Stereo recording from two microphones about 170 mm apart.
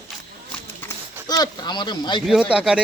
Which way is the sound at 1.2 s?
25° left (ahead or behind).